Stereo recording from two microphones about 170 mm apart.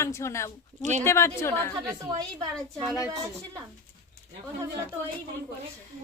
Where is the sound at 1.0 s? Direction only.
15° left (ahead or behind).